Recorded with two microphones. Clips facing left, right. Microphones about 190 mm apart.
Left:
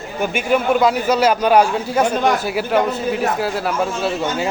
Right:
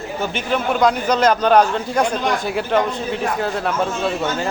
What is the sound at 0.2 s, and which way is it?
A man's voice, 10° left (ahead or behind).